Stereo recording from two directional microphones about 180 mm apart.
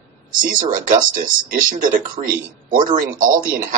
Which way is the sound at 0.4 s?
50° right (ahead or behind).